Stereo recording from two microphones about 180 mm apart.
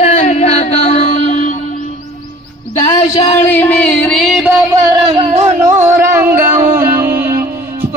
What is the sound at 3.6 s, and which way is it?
Music, 5° left (ahead or behind).